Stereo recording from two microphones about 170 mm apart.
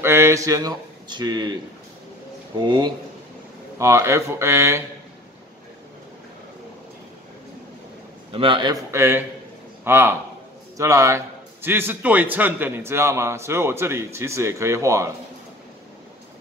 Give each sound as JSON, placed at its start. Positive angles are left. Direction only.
{"t": 0.0, "sound": "a man's voice", "side_deg": -15}
{"t": 8.3, "sound": "a man's voice", "side_deg": -30}
{"t": 8.9, "sound": "a man's voice", "side_deg": -15}